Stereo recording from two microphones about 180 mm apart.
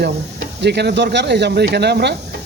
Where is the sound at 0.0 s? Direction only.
70° right (ahead or behind).